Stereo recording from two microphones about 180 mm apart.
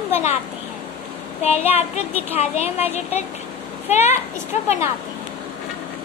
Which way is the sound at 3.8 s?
40° left (ahead or behind).